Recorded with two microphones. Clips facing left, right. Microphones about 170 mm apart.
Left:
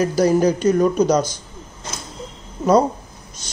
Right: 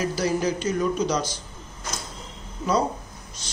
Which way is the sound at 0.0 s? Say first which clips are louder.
Left 8 dB; 45° left (ahead or behind).